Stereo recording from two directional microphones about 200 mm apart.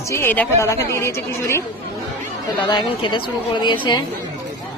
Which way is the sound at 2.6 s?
25° left (ahead or behind).